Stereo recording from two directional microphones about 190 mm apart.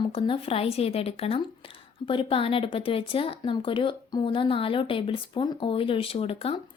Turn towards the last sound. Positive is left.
turn(degrees=30)  # may be behind; listen again after turning